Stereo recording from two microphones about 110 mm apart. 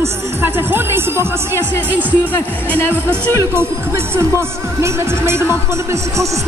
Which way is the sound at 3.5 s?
25° right (ahead or behind).